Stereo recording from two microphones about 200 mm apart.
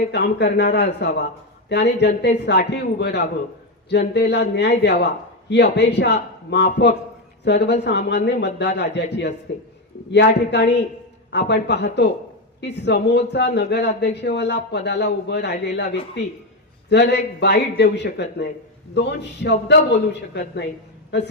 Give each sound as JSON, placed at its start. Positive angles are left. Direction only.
{"t": 0.1, "sound": "speech", "side_deg": 55}